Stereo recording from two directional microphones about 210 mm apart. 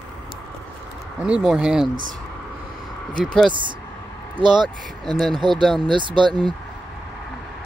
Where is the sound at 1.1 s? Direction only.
5° right (ahead or behind).